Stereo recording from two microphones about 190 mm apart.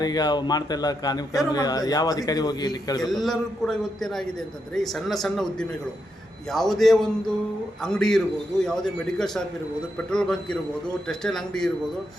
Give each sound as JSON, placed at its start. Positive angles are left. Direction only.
{"t": 0.0, "sound": "a man's voice", "side_deg": 20}
{"t": 3.0, "sound": "a man's voice", "side_deg": 0}